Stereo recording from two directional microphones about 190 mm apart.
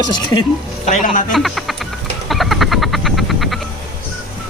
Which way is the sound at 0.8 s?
40° left (ahead or behind).